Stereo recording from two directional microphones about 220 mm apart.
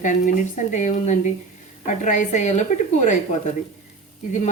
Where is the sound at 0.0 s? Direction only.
35° left (ahead or behind).